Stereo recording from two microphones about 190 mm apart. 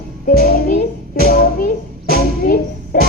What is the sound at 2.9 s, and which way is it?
Music, 50° left (ahead or behind).